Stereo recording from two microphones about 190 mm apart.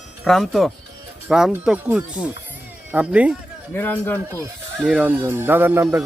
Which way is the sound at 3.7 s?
10° left (ahead or behind).